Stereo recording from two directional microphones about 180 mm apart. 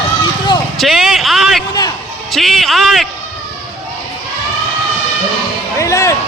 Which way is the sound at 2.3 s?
Centre (ahead or behind).